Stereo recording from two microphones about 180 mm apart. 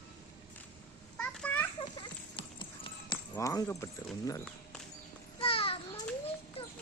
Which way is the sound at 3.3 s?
20° left (ahead or behind).